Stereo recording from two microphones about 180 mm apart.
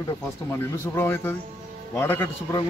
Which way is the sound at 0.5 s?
15° left (ahead or behind).